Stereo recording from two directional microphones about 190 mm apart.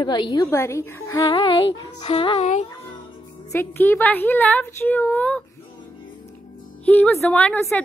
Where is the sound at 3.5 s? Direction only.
10° left (ahead or behind).